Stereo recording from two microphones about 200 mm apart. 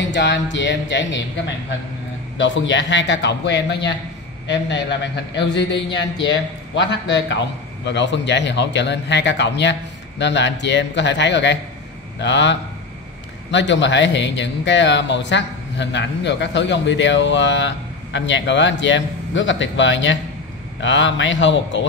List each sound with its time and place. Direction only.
0.0 s a man's voice: 60° left (ahead or behind)
2.3 s a man's voice: 65° left (ahead or behind)